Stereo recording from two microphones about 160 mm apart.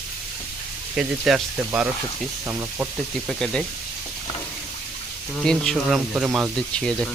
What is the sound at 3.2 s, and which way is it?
Speech, 5° left (ahead or behind).